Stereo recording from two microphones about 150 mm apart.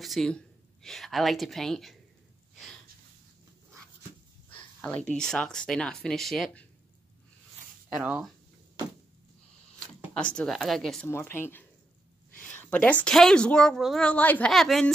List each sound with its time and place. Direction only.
0.0 s a woman's voice: centre (ahead or behind)
4.5 s a sound: 10° left (ahead or behind)
5.1 s a woman's voice: 5° left (ahead or behind)
7.9 s a woman's voice: 5° right (ahead or behind)
10.1 s a woman's voice: 5° left (ahead or behind)
11.1 s a woman's voice: 15° left (ahead or behind)